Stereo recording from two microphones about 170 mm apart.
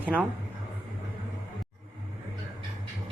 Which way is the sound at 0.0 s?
5° right (ahead or behind).